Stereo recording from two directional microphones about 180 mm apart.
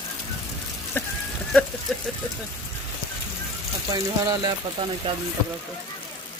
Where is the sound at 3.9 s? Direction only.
20° right (ahead or behind).